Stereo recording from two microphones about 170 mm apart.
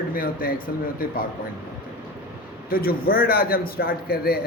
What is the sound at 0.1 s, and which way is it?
Speech, 60° left (ahead or behind).